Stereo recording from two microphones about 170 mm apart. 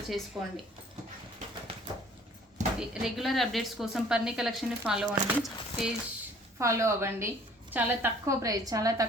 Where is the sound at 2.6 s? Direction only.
45° right (ahead or behind).